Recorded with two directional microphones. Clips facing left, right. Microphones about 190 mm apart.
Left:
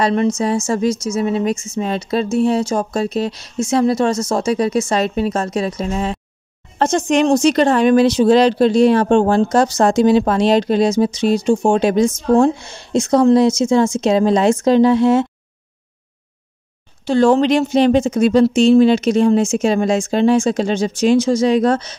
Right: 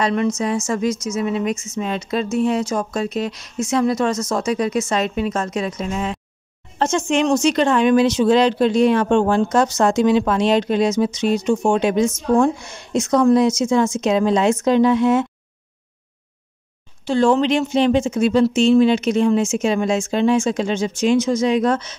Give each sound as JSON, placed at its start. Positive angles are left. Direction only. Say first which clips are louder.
{"t": 0.0, "sound": "speech", "louder": "left 3 dB", "side_deg": 35}
{"t": 17.0, "sound": "speech", "louder": "left 3 dB", "side_deg": 40}